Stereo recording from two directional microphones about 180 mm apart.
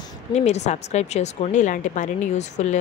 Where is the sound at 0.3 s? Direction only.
40° left (ahead or behind).